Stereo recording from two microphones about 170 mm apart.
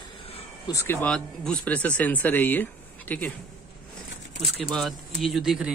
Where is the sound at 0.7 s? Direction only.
15° left (ahead or behind).